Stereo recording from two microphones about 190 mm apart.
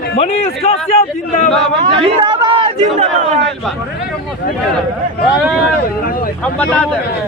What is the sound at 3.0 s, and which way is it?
Speech, 35° right (ahead or behind).